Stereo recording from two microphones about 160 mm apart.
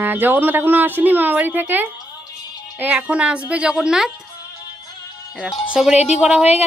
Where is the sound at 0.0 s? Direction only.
10° right (ahead or behind).